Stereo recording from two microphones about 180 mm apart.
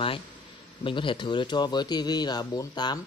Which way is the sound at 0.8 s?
25° left (ahead or behind).